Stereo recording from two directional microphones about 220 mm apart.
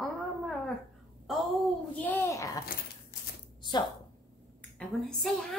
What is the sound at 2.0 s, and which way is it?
Child singing, 10° left (ahead or behind).